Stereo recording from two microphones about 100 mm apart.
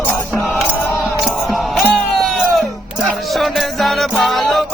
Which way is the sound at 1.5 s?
Centre (ahead or behind).